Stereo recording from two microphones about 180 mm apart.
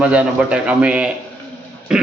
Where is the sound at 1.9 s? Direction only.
5° right (ahead or behind).